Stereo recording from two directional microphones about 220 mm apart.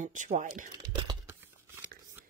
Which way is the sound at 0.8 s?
15° right (ahead or behind).